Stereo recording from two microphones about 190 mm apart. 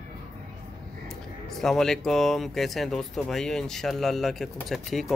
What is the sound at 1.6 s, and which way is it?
Speech, centre (ahead or behind).